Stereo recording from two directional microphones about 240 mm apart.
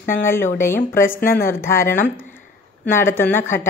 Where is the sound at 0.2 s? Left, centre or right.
Centre.